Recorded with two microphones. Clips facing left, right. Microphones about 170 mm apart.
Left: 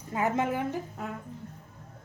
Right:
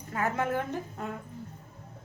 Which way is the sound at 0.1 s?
20° left (ahead or behind).